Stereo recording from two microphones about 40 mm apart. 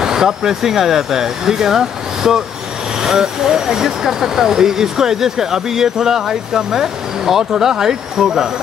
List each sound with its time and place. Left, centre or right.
0.0 s speech: centre